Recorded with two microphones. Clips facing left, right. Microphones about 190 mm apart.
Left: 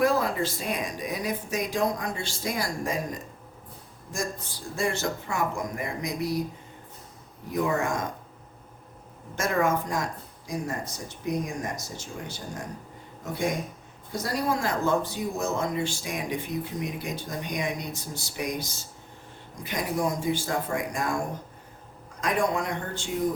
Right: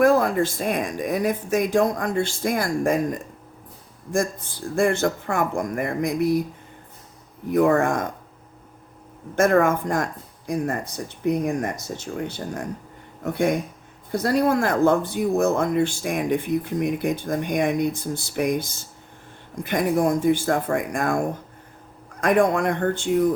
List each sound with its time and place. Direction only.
0.0 s speech: 50° right (ahead or behind)
4.7 s speech: 55° right (ahead or behind)
7.5 s speech: 55° right (ahead or behind)
9.3 s speech: 55° right (ahead or behind)
22.2 s speech: 55° right (ahead or behind)